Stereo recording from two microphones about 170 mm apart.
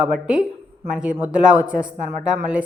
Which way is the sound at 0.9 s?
5° right (ahead or behind).